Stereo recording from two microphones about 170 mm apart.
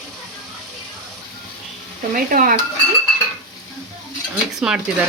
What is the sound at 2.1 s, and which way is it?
Stir, 55° right (ahead or behind).